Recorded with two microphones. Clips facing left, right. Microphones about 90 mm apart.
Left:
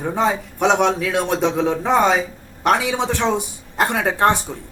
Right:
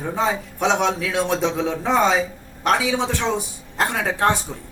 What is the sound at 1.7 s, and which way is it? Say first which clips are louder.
Speech: left 3 dB; 15° left (ahead or behind).